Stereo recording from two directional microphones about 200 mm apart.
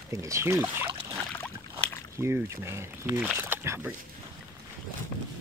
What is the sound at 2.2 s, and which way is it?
Speech, 15° right (ahead or behind).